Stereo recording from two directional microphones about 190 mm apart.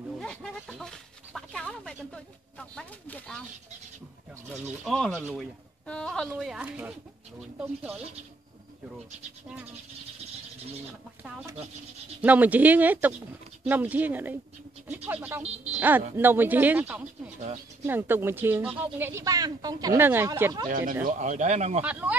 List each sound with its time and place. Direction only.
0.2 s speech: 5° left (ahead or behind)
4.5 s speech: centre (ahead or behind)
12.2 s speech: 10° right (ahead or behind)
15.4 s a woman's voice: 30° right (ahead or behind)
16.2 s speech: 10° right (ahead or behind)
21.1 s speech: 40° right (ahead or behind)